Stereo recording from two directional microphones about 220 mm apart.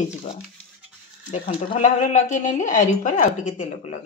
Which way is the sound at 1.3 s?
30° left (ahead or behind).